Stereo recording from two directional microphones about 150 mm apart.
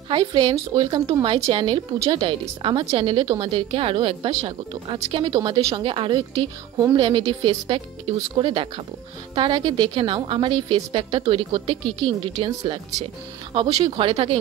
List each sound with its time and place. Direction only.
0.1 s a woman's voice: 30° right (ahead or behind)